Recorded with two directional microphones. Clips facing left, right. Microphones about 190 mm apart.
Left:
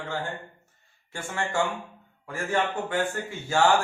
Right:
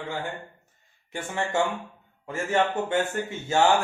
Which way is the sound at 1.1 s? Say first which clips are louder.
Right 2 dB; 20° right (ahead or behind).